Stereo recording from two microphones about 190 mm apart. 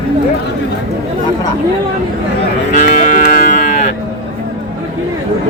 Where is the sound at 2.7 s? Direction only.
45° left (ahead or behind).